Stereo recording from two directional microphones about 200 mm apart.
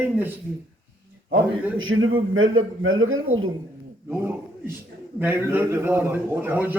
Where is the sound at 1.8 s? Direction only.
80° right.